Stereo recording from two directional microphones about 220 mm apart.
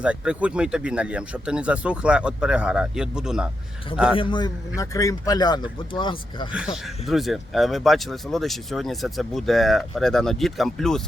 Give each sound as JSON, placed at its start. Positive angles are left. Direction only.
{"t": 0.0, "sound": "speech", "side_deg": -5}
{"t": 4.1, "sound": "speech", "side_deg": 20}
{"t": 7.1, "sound": "speech", "side_deg": 0}